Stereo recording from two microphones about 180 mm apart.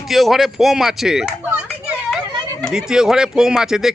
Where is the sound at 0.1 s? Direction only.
Centre (ahead or behind).